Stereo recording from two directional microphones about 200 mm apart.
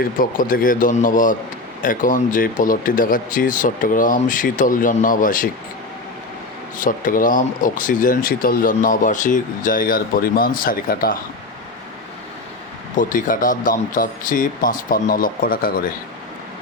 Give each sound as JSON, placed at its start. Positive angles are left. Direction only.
{"t": 0.2, "sound": "speech", "side_deg": 45}
{"t": 6.7, "sound": "speech", "side_deg": 40}
{"t": 13.0, "sound": "speech", "side_deg": 40}